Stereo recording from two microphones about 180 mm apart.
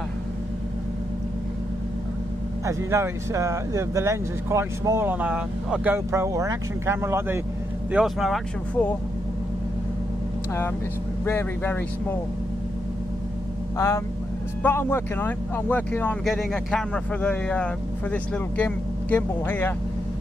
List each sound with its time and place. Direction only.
2.6 s speech: 15° right (ahead or behind)
7.9 s speech: centre (ahead or behind)
11.2 s speech: 10° left (ahead or behind)
13.7 s speech: 15° left (ahead or behind)